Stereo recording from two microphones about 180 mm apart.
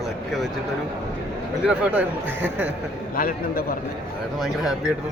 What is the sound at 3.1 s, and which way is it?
Speech, 50° left (ahead or behind).